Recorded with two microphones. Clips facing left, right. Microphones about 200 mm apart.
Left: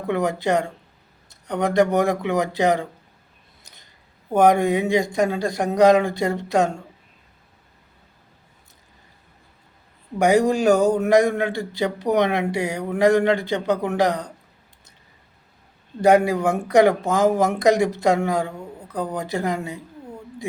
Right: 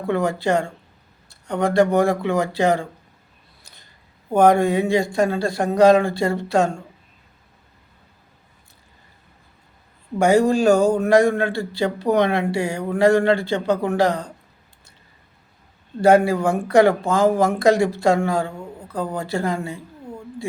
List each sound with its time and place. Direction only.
0.1 s a man's voice: 20° left (ahead or behind)
3.6 s a sound: 20° left (ahead or behind)
4.3 s a man's voice: 20° left (ahead or behind)
10.2 s a man's voice: 15° left (ahead or behind)
16.0 s a man's voice: 20° left (ahead or behind)